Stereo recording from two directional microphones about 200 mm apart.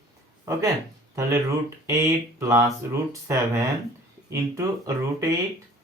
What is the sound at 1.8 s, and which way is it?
Speech, 15° right (ahead or behind).